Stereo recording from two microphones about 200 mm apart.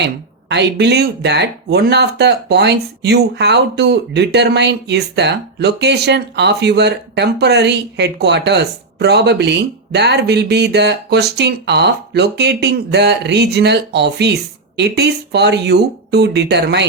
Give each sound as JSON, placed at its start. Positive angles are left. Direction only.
{"t": 0.0, "sound": "speech", "side_deg": -60}